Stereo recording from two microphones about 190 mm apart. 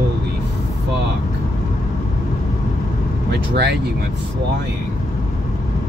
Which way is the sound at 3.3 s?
60° right (ahead or behind).